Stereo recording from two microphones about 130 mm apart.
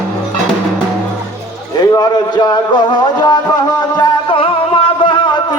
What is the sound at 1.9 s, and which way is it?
Music, 30° left (ahead or behind).